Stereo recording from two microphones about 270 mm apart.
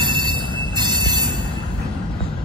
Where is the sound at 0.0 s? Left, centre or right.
Centre.